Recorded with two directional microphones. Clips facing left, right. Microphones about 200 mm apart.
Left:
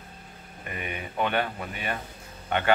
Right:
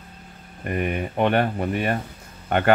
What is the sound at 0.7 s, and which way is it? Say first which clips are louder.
Speech: right 11 dB; 50° right (ahead or behind).